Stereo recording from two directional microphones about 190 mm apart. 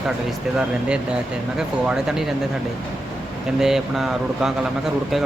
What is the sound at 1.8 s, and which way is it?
Speech, 5° right (ahead or behind).